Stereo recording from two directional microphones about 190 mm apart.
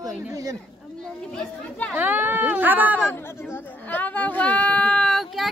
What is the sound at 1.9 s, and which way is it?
Speech, 10° right (ahead or behind).